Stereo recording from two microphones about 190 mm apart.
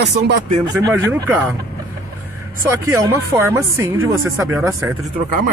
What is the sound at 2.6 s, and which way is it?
Speech, 15° right (ahead or behind).